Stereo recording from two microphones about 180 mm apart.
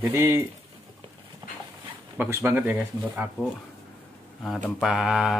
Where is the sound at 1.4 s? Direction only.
25° right (ahead or behind).